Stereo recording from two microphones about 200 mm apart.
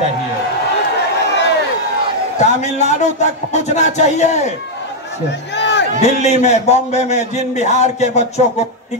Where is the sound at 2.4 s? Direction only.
35° left (ahead or behind).